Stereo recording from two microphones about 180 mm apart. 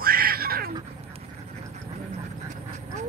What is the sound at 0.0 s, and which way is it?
Crow, 55° right (ahead or behind).